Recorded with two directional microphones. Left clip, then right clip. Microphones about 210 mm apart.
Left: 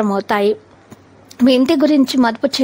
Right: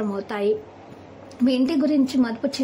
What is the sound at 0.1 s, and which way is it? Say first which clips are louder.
A woman's voice: left 8 dB; 40° left (ahead or behind).